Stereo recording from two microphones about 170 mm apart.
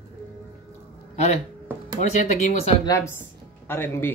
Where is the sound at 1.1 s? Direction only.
40° left (ahead or behind).